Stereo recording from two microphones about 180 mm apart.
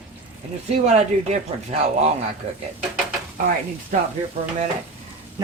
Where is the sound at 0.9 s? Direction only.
35° right (ahead or behind).